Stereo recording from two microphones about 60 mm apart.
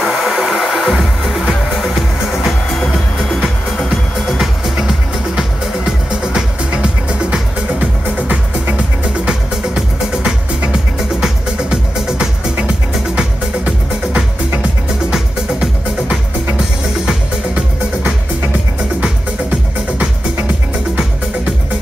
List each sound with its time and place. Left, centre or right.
0.0 s music: centre
8.7 s music: centre